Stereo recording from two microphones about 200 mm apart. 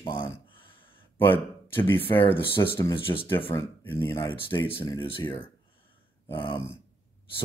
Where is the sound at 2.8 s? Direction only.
25° left (ahead or behind).